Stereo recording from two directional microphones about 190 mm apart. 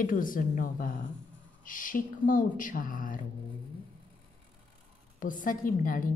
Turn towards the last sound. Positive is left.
turn(degrees=45)  # may be behind; listen again after turning